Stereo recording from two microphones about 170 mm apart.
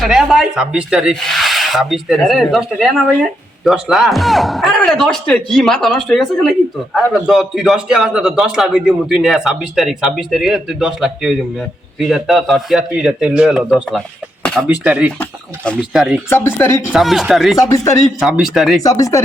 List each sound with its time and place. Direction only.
0.0 s a man's voice: centre (ahead or behind)
14.8 s speech: 10° right (ahead or behind)
15.2 s speech: 5° left (ahead or behind)
15.8 s a man's voice: 5° right (ahead or behind)
16.3 s speech: 15° left (ahead or behind)
16.9 s a man's voice: centre (ahead or behind)
17.6 s speech: 20° left (ahead or behind)
18.2 s a man's voice: centre (ahead or behind)
18.8 s speech: 20° left (ahead or behind)